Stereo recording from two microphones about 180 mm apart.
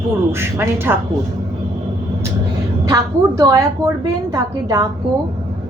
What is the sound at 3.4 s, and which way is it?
A woman's voice, 20° right (ahead or behind).